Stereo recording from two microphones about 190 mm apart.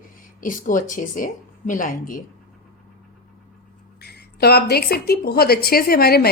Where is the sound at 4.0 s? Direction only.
55° left (ahead or behind).